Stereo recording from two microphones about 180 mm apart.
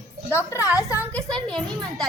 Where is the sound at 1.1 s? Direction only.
5° left (ahead or behind).